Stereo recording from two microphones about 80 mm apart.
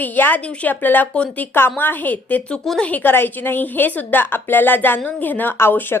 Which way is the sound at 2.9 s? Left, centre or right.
Left.